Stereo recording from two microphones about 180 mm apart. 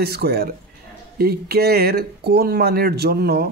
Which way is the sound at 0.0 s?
60° right (ahead or behind).